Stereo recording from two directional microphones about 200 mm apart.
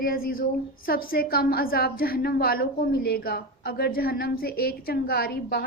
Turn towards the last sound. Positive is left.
turn(degrees=50)  # may be behind; listen again after turning